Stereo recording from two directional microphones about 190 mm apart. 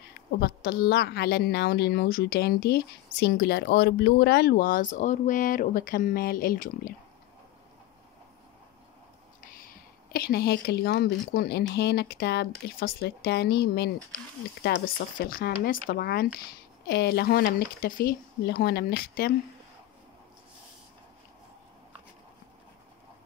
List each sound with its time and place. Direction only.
0.4 s a woman's voice: 60° left (ahead or behind)
10.1 s speech: 55° left (ahead or behind)
15.2 s speech: 50° left (ahead or behind)